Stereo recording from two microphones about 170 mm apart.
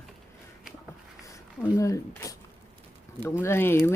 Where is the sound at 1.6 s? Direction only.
15° left (ahead or behind).